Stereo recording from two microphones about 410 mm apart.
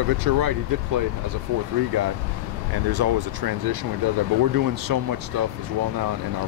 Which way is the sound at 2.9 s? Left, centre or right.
Right.